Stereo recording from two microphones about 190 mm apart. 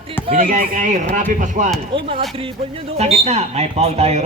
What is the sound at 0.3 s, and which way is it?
Speech, 30° right (ahead or behind).